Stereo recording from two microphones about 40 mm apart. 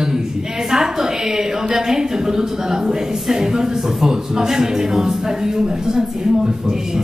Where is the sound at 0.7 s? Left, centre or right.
Centre.